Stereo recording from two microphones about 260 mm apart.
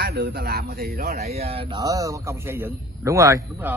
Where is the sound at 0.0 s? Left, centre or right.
Right.